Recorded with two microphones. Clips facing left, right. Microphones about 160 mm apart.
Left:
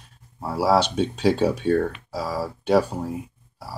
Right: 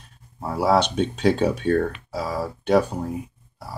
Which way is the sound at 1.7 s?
5° left (ahead or behind).